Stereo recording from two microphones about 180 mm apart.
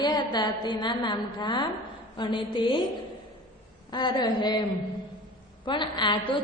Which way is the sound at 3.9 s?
25° left (ahead or behind).